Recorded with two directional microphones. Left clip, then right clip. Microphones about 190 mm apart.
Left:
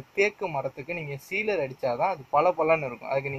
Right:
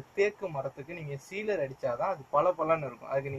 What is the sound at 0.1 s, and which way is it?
Speech, 55° left (ahead or behind).